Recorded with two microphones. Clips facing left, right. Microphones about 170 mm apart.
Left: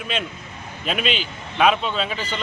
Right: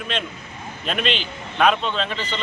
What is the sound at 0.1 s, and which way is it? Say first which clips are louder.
A man's voice: left 2 dB; 10° left (ahead or behind).